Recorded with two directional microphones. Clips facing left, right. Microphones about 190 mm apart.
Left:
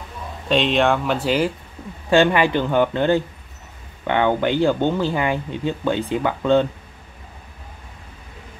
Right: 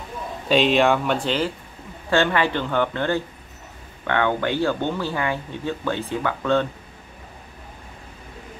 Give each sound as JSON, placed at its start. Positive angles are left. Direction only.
{"t": 0.5, "sound": "speech", "side_deg": 0}